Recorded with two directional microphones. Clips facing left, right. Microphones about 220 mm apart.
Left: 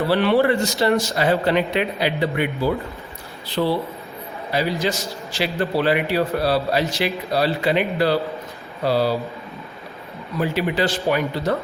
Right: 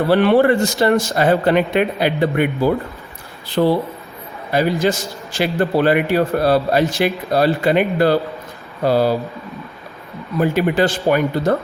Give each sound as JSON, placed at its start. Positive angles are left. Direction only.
{"t": 0.1, "sound": "a man's voice", "side_deg": -50}
{"t": 10.4, "sound": "a man's voice", "side_deg": -50}